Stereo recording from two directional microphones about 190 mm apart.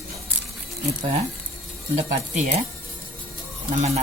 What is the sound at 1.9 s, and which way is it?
Speech, 40° right (ahead or behind).